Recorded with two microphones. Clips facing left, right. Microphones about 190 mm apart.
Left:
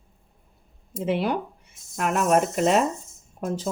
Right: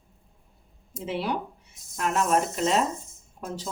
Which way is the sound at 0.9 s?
55° left (ahead or behind).